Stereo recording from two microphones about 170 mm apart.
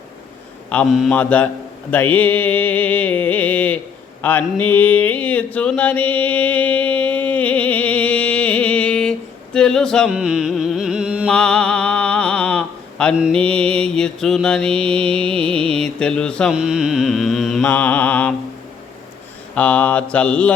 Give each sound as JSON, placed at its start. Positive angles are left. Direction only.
{"t": 0.9, "sound": "mantra", "side_deg": 0}
{"t": 1.1, "sound": "mantra", "side_deg": 10}
{"t": 4.2, "sound": "a sound", "side_deg": 10}
{"t": 11.3, "sound": "a sound", "side_deg": 5}
{"t": 13.3, "sound": "mantra", "side_deg": 5}
{"t": 15.0, "sound": "music", "side_deg": -30}
{"t": 15.8, "sound": "mantra", "side_deg": 5}
{"t": 17.7, "sound": "mantra", "side_deg": 10}
{"t": 19.5, "sound": "mantra", "side_deg": 10}